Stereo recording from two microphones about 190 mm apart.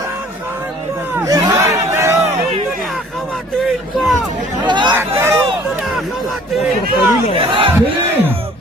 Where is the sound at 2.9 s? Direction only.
Centre (ahead or behind).